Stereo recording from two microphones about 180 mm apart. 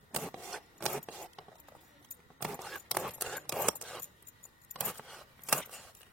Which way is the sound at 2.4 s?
Centre (ahead or behind).